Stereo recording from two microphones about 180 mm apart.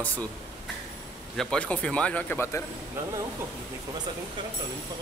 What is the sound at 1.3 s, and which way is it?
Speech, 5° left (ahead or behind).